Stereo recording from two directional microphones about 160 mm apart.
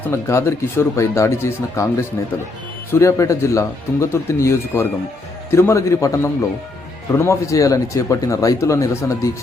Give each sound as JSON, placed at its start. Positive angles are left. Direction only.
{"t": 0.1, "sound": "speech", "side_deg": 15}
{"t": 2.9, "sound": "speech", "side_deg": 20}